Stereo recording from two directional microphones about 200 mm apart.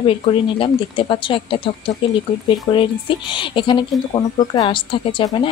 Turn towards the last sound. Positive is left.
turn(degrees=25)  # may be behind; listen again after turning